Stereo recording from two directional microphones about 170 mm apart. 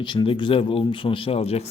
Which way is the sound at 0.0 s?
30° left (ahead or behind).